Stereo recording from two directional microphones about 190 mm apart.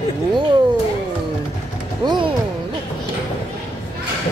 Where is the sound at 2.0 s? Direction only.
25° right (ahead or behind).